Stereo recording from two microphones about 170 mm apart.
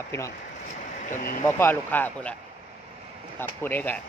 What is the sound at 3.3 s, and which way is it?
Speech, 10° left (ahead or behind).